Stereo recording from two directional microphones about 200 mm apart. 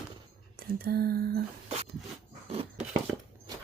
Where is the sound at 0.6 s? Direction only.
50° right (ahead or behind).